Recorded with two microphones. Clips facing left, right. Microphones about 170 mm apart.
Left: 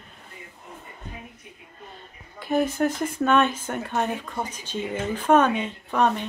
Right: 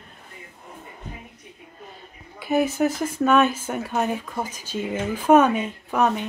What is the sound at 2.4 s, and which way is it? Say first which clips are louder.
A woman's voice: right 2 dB; 5° right (ahead or behind).